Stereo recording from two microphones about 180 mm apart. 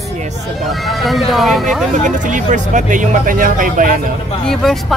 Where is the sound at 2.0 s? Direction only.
45° right (ahead or behind).